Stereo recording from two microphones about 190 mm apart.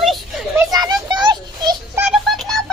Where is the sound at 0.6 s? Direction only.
20° right (ahead or behind).